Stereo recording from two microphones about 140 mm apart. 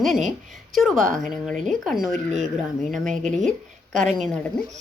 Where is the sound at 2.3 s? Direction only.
55° right (ahead or behind).